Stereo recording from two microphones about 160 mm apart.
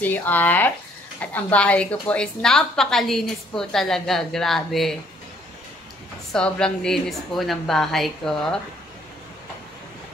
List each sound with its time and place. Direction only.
0.0 s a woman's voice: 10° left (ahead or behind)
6.3 s a woman's voice: 5° left (ahead or behind)